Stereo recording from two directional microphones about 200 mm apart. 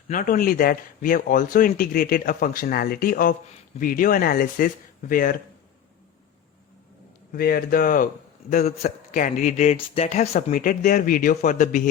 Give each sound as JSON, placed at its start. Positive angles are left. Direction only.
{"t": 0.1, "sound": "speech", "side_deg": 40}
{"t": 7.3, "sound": "speech", "side_deg": 50}